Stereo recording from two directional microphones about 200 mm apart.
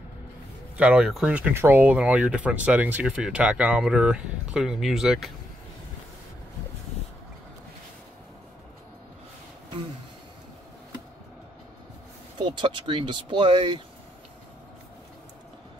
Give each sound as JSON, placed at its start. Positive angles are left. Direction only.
{"t": 0.7, "sound": "speech", "side_deg": -5}
{"t": 12.4, "sound": "speech", "side_deg": -25}